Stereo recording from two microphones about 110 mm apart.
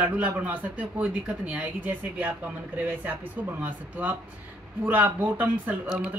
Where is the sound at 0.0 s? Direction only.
15° right (ahead or behind).